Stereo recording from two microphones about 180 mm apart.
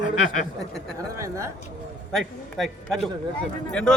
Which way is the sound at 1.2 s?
15° right (ahead or behind).